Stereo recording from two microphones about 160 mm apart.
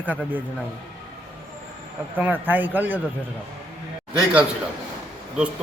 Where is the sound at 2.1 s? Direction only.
10° right (ahead or behind).